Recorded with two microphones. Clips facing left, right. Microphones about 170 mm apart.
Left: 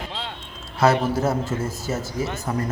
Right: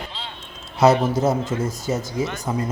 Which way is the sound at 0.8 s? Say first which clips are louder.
Right 3 dB; 20° right (ahead or behind).